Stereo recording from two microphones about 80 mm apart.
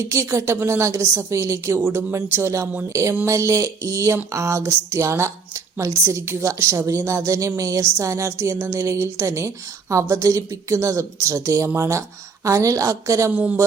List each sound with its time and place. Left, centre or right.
0.1 s a woman's voice: right
1.8 s a woman's voice: right
13.3 s speech: centre